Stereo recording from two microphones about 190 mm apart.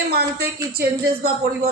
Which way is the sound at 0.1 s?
55° right (ahead or behind).